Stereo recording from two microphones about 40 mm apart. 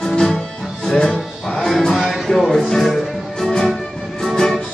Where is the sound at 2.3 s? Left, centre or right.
Centre.